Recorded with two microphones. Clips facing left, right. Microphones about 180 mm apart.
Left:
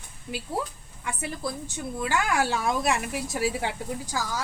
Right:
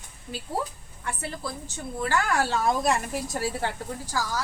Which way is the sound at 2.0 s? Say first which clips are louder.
Even; 10° left (ahead or behind).